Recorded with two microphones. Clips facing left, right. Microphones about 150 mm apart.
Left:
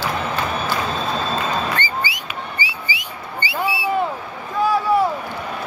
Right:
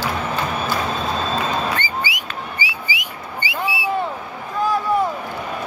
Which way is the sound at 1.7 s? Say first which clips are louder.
Even; 10° right (ahead or behind).